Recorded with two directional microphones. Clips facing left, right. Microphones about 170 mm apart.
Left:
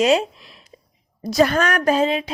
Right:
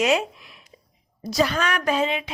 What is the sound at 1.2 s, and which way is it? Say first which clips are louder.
A woman's voice: left 5 dB; 55° left (ahead or behind).